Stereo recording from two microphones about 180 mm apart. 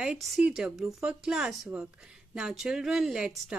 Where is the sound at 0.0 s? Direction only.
Centre (ahead or behind).